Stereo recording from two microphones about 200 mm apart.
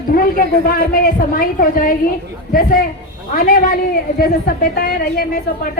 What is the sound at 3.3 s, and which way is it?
A woman's voice, 45° left (ahead or behind).